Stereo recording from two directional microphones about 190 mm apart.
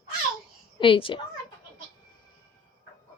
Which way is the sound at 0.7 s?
25° left (ahead or behind).